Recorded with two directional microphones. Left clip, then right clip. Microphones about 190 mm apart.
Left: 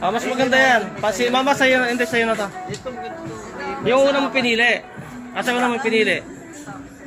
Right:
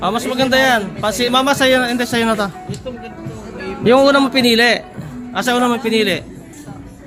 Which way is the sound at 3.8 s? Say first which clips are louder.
Right 6 dB; 45° right (ahead or behind).